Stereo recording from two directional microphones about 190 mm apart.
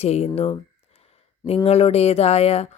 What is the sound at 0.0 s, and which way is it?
Speech, 35° left (ahead or behind).